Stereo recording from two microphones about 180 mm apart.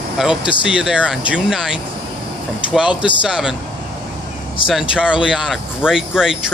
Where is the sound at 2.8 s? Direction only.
25° left (ahead or behind).